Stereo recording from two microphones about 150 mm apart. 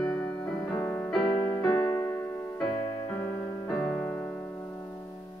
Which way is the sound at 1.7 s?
15° left (ahead or behind).